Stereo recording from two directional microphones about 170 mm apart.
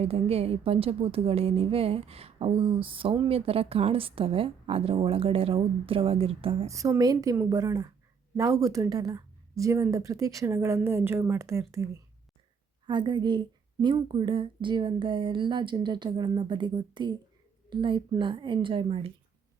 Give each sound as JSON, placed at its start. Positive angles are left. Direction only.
{"t": 0.0, "sound": "a woman's voice", "side_deg": -35}
{"t": 6.7, "sound": "a woman's voice", "side_deg": -20}
{"t": 12.9, "sound": "speech", "side_deg": -25}